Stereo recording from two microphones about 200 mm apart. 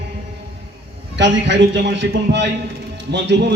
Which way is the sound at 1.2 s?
65° right (ahead or behind).